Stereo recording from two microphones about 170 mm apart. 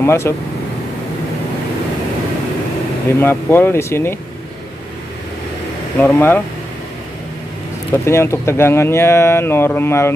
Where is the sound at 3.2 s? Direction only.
15° left (ahead or behind).